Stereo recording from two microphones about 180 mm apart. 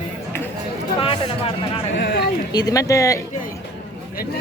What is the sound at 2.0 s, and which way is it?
Speech, 70° left (ahead or behind).